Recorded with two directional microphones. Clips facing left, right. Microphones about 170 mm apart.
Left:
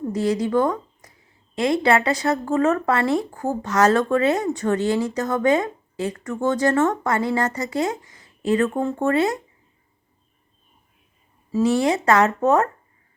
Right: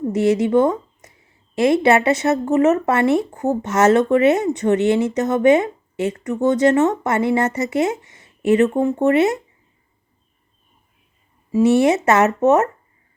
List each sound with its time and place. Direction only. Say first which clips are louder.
0.1 s speech: right 5 dB; 25° right (ahead or behind)
11.5 s speech: right 5 dB; 25° right (ahead or behind)